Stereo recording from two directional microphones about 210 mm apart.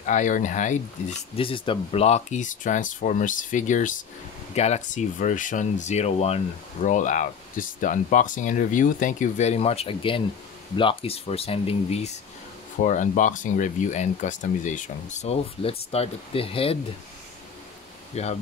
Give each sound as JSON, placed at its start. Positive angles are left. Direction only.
{"t": 0.0, "sound": "speech", "side_deg": 35}
{"t": 1.3, "sound": "speech", "side_deg": 25}
{"t": 18.1, "sound": "speech", "side_deg": 30}